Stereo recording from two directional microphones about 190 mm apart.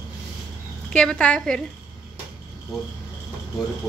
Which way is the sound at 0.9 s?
5° left (ahead or behind).